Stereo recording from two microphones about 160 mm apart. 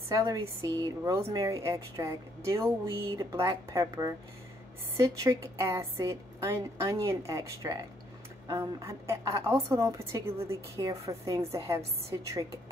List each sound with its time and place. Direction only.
0.1 s a woman's voice: 20° right (ahead or behind)